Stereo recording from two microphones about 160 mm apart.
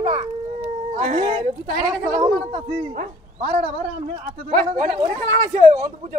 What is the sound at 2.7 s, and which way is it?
Speech, 60° right (ahead or behind).